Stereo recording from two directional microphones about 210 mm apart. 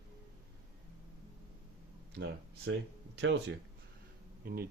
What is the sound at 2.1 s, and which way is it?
Speech, 55° right (ahead or behind).